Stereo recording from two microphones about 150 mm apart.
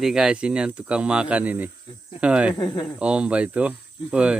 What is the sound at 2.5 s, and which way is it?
Speech, 30° left (ahead or behind).